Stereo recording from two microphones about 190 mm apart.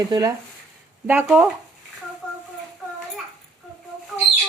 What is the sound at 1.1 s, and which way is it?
Speech, 5° right (ahead or behind).